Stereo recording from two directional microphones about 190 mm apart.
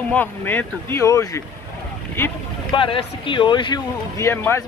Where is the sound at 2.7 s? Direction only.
25° left (ahead or behind).